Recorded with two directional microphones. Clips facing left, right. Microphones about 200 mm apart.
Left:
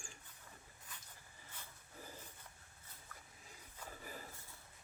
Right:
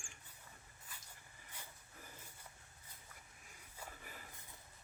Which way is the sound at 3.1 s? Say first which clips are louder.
Left 3 dB; 10° right (ahead or behind).